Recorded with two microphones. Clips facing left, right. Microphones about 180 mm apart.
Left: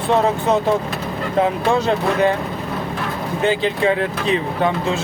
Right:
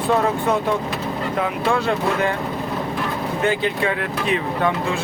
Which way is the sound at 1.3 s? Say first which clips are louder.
Left 5 dB; 25° left (ahead or behind).